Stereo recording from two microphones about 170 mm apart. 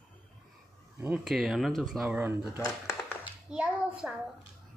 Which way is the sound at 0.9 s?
10° right (ahead or behind).